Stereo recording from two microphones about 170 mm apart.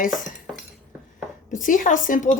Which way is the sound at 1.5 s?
50° left (ahead or behind).